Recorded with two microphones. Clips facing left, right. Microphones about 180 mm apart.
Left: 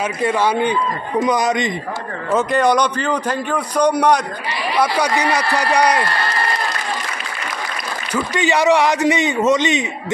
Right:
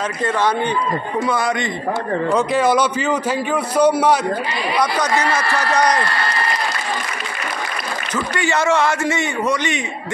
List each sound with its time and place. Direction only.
0.2 s a man's voice: 10° left (ahead or behind)
2.3 s a man's voice: 5° right (ahead or behind)
4.7 s a man's voice: 10° left (ahead or behind)
8.1 s a man's voice: 15° left (ahead or behind)